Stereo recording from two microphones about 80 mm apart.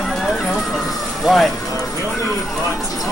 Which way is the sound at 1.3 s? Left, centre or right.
Centre.